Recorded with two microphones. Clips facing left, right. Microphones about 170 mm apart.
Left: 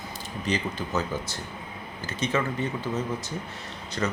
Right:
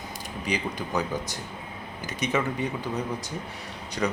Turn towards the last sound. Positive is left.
turn(degrees=-5)  # may be behind; listen again after turning